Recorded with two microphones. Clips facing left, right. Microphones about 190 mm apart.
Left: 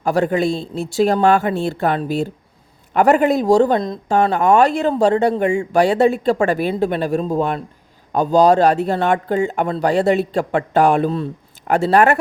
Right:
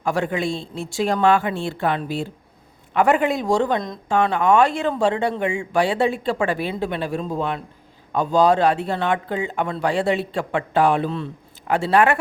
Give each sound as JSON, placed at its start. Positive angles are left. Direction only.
{"t": 0.0, "sound": "speech", "side_deg": 40}